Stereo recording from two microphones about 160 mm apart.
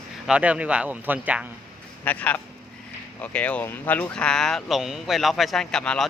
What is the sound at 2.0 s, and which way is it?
Speech, 10° left (ahead or behind).